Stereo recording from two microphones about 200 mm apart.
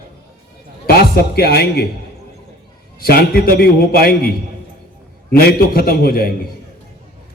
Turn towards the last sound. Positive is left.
turn(degrees=50)  # may be behind; listen again after turning